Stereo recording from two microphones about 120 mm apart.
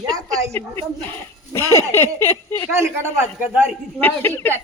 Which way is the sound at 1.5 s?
20° left (ahead or behind).